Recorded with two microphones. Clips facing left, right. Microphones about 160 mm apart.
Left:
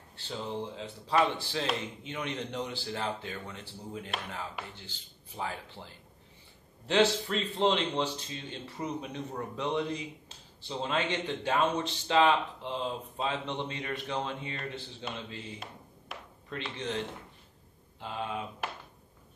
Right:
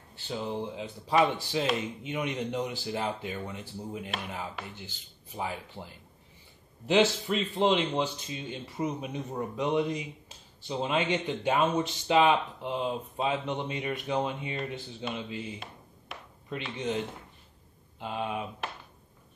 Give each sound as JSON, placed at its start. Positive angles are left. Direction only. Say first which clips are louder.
{"t": 0.3, "sound": "speech", "louder": "right 3 dB", "side_deg": -10}
{"t": 16.4, "sound": "speech", "louder": "right 4 dB", "side_deg": -10}
{"t": 18.0, "sound": "speech", "louder": "right 3 dB", "side_deg": -15}